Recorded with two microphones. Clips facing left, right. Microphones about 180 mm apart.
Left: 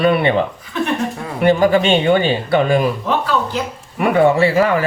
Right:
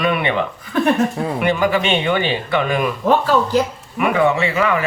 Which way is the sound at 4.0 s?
35° left (ahead or behind).